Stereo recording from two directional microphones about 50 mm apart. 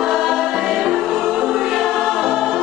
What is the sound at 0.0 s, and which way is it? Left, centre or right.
Music, centre.